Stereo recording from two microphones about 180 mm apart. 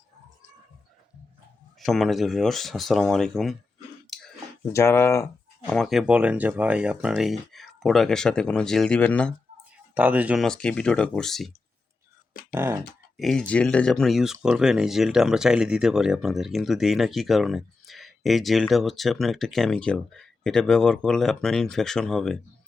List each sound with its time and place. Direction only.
1.8 s speech: centre (ahead or behind)
4.1 s a sound: centre (ahead or behind)
4.7 s speech: 15° left (ahead or behind)
5.7 s speech: centre (ahead or behind)
9.9 s speech: 10° right (ahead or behind)
10.4 s speech: 5° left (ahead or behind)
12.5 s speech: 15° right (ahead or behind)
13.1 s speech: centre (ahead or behind)